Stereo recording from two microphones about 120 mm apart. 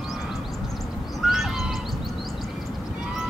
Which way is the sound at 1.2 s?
Centre (ahead or behind).